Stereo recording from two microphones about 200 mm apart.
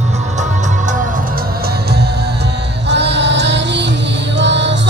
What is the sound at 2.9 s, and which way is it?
Music, 60° right (ahead or behind).